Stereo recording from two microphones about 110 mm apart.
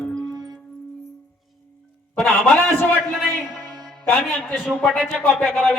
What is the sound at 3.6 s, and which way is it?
Music, 40° right (ahead or behind).